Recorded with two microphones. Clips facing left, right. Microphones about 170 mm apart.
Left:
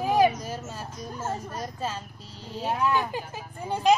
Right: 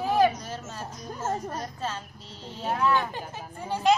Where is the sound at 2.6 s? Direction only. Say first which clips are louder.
Even; 15° left (ahead or behind).